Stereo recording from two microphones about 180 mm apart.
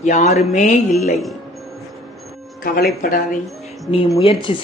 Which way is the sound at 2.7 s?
55° left (ahead or behind).